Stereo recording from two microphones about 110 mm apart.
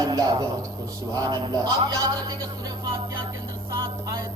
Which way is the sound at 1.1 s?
35° right (ahead or behind).